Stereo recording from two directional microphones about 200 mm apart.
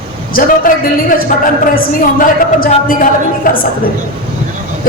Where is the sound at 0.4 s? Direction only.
45° left (ahead or behind).